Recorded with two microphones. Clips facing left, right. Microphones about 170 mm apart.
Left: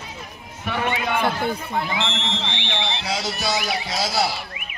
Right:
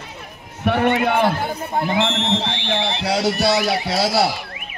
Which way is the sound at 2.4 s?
40° right (ahead or behind).